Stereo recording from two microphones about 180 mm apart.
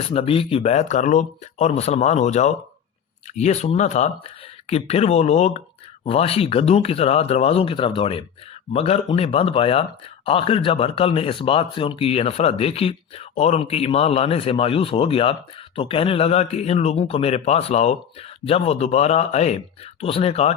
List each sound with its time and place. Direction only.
0.1 s speech: 30° left (ahead or behind)